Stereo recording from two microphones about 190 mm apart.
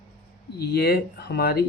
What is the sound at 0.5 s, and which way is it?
A man's voice, 55° left (ahead or behind).